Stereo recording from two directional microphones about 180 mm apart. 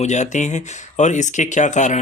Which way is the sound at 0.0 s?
40° left (ahead or behind).